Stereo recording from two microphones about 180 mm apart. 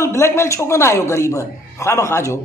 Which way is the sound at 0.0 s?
15° left (ahead or behind).